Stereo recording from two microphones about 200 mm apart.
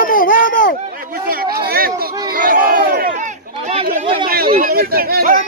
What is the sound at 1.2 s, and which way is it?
Speech, 45° right (ahead or behind).